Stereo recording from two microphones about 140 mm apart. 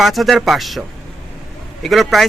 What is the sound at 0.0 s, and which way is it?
Speech, centre (ahead or behind).